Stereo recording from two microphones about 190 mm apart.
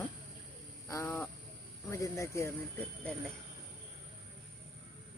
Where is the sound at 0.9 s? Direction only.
15° left (ahead or behind).